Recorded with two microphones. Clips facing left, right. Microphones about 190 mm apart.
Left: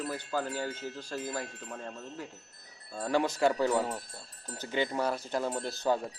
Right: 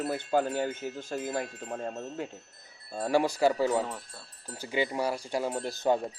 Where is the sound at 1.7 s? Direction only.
35° right (ahead or behind).